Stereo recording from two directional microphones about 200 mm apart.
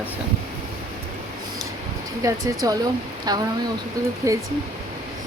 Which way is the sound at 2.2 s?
15° right (ahead or behind).